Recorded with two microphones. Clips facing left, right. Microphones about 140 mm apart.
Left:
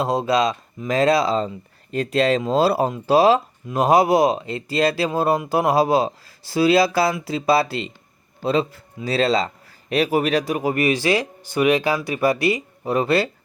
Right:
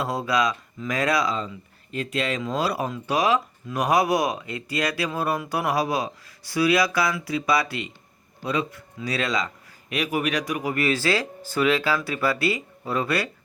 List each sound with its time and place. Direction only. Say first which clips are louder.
0.0 s speech: left 5 dB; 25° left (ahead or behind)